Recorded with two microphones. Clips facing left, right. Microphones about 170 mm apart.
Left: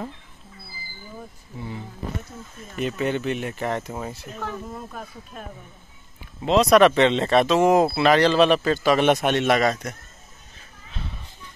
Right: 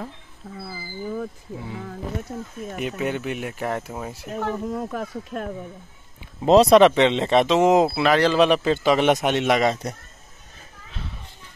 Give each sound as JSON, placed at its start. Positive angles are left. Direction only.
{"t": 0.6, "sound": "speech", "side_deg": -70}
{"t": 2.8, "sound": "a man's voice", "side_deg": -10}
{"t": 4.6, "sound": "speech", "side_deg": -75}
{"t": 6.4, "sound": "speech", "side_deg": -35}
{"t": 6.7, "sound": "speech", "side_deg": -15}
{"t": 7.9, "sound": "a man's voice", "side_deg": -5}